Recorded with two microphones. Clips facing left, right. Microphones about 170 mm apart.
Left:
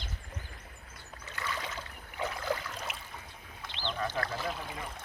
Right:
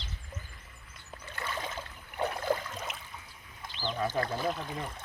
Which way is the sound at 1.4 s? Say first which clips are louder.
Right 1 dB; 50° right (ahead or behind).